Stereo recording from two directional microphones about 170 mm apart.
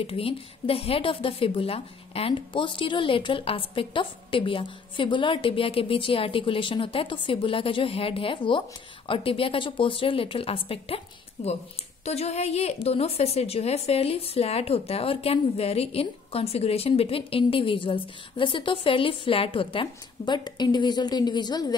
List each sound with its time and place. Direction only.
0.0 s a woman's voice: 35° left (ahead or behind)